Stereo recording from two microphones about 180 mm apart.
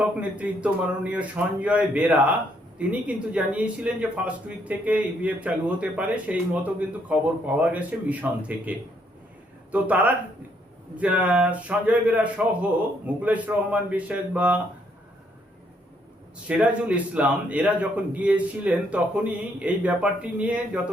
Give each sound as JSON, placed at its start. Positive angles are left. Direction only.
{"t": 0.0, "sound": "a man's voice", "side_deg": -5}
{"t": 16.5, "sound": "a man's voice", "side_deg": -10}